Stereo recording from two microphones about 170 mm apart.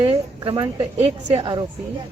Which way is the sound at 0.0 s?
30° right (ahead or behind).